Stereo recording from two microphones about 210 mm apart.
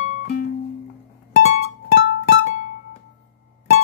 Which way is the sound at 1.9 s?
45° left (ahead or behind).